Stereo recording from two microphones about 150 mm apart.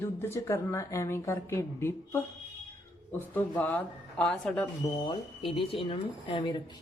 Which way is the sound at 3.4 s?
10° left (ahead or behind).